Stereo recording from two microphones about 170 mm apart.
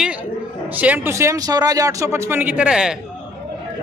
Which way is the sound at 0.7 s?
10° right (ahead or behind).